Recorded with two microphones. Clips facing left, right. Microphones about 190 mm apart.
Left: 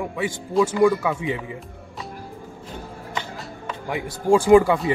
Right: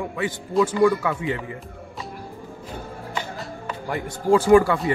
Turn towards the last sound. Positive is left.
turn(degrees=20)  # may be behind; listen again after turning